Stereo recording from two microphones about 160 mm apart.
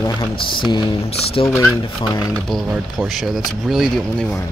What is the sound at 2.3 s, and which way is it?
Speech, centre (ahead or behind).